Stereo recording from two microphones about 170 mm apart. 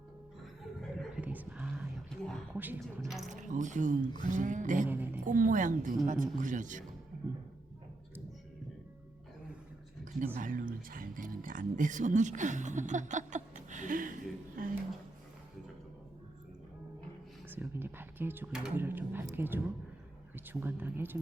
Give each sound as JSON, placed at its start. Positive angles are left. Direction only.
{"t": 0.8, "sound": "whispering", "side_deg": -5}
{"t": 2.5, "sound": "speech", "side_deg": -10}
{"t": 3.2, "sound": "speech", "side_deg": -50}
{"t": 4.9, "sound": "speech", "side_deg": -10}
{"t": 5.2, "sound": "speech", "side_deg": -50}
{"t": 10.3, "sound": "speech", "side_deg": -55}
{"t": 17.5, "sound": "a sound", "side_deg": -10}
{"t": 20.3, "sound": "speech", "side_deg": -10}